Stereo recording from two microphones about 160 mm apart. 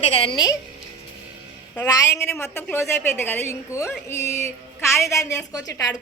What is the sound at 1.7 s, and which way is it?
A woman's voice, 20° left (ahead or behind).